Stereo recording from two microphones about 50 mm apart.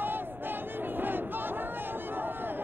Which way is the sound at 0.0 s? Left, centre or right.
Right.